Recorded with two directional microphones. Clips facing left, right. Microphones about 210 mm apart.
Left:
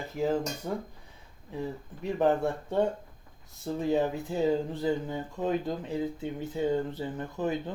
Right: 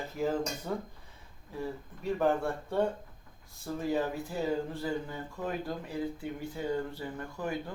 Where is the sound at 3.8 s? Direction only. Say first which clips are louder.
Left 4 dB; 20° left (ahead or behind).